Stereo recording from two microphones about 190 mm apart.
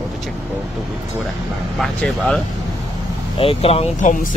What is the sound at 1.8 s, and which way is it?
Speech, centre (ahead or behind).